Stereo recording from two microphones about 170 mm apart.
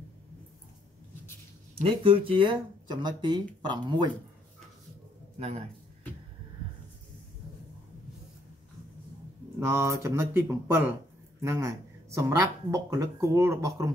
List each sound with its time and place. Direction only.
1.8 s speech: 30° right (ahead or behind)
9.6 s speech: 15° right (ahead or behind)